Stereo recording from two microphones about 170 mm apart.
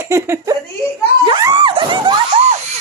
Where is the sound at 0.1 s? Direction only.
15° right (ahead or behind).